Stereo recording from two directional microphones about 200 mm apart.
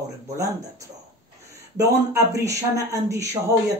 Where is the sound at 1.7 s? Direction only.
15° right (ahead or behind).